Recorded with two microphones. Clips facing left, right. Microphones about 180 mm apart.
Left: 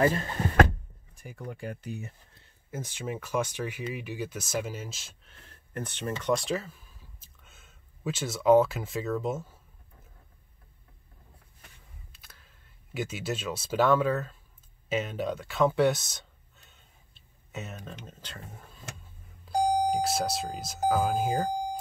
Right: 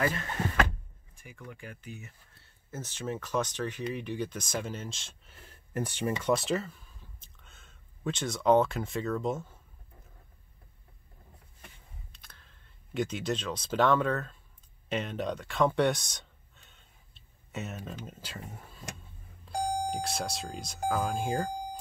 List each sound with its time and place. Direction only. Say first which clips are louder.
0.0 s speech: left 5 dB; 30° left (ahead or behind)
2.7 s speech: left 1 dB; 10° left (ahead or behind)
12.1 s a sound: even; 5° left (ahead or behind)
14.9 s speech: left 2 dB; 5° left (ahead or behind)